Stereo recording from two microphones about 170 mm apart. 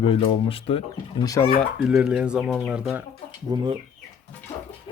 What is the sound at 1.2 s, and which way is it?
Speech, 20° left (ahead or behind).